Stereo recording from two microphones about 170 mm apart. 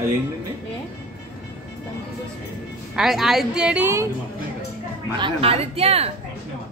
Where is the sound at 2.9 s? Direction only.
Centre (ahead or behind).